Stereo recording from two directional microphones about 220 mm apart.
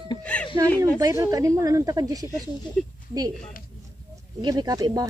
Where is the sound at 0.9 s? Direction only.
15° right (ahead or behind).